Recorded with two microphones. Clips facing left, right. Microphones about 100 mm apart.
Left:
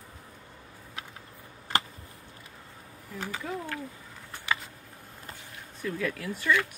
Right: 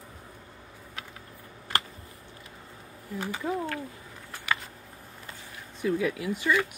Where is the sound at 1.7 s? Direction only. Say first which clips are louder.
Left 2 dB; 20° left (ahead or behind).